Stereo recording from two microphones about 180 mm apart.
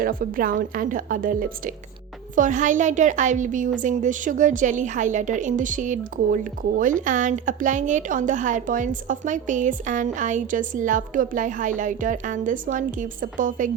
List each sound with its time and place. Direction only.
0.0 s a woman's voice: 50° right (ahead or behind)